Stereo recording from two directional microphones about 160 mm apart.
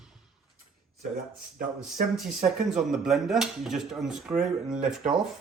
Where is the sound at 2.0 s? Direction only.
60° right (ahead or behind).